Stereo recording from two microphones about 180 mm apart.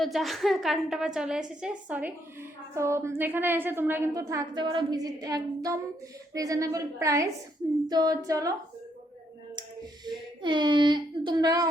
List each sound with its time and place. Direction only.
0.0 s a woman's voice: centre (ahead or behind); by 8.5 s 20° right (ahead or behind)
10.1 s speech: 25° right (ahead or behind)